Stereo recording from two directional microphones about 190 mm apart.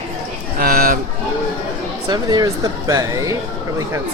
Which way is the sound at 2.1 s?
20° right (ahead or behind).